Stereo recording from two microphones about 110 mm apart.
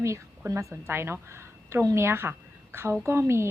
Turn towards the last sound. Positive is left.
turn(degrees=-25)  # may be behind; listen again after turning